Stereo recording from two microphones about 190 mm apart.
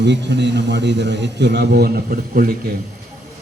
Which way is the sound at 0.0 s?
65° right (ahead or behind).